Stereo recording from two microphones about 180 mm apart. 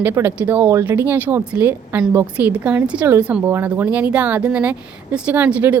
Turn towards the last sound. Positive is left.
turn(degrees=-10)  # may be behind; listen again after turning